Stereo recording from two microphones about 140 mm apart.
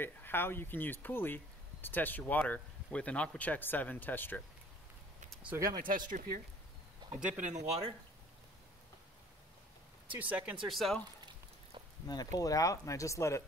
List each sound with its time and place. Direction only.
0.0 s speech: 15° left (ahead or behind)
5.5 s speech: 20° right (ahead or behind)
5.8 s speech: 75° right (ahead or behind)
7.2 s speech: 10° right (ahead or behind)
7.4 s speech: 55° right (ahead or behind)
10.1 s speech: 10° right (ahead or behind)
10.7 s speech: centre (ahead or behind)
12.1 s speech: 25° left (ahead or behind)